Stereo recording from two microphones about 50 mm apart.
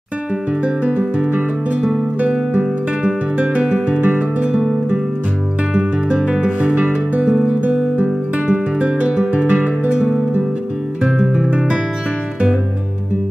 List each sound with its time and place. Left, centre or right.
0.7 s music: right
2.5 s guitar: centre
3.3 s music: right
5.7 s music: right
11.2 s guitar: centre